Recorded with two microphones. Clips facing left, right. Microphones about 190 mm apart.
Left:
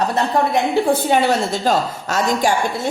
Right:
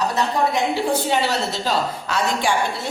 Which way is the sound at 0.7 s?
55° left (ahead or behind).